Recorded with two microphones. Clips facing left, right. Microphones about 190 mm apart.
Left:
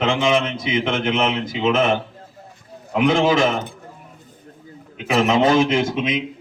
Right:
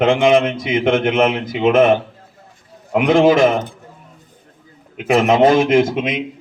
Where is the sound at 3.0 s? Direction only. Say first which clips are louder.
Right 5 dB; 50° right (ahead or behind).